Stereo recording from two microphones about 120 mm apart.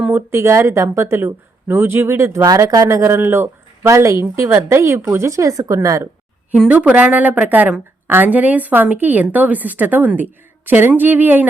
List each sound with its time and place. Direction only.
0.0 s speech: 20° right (ahead or behind)
6.5 s a woman's voice: 10° right (ahead or behind)